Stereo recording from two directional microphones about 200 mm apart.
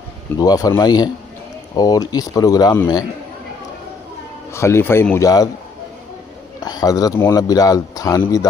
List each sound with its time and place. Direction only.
0.4 s speech: 20° left (ahead or behind)
4.6 s a man's voice: 15° left (ahead or behind)
6.6 s a man's voice: 20° left (ahead or behind)